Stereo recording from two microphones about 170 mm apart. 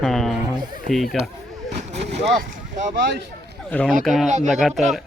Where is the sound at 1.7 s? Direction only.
40° right (ahead or behind).